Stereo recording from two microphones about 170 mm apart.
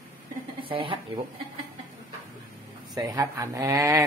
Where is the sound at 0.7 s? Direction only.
30° right (ahead or behind).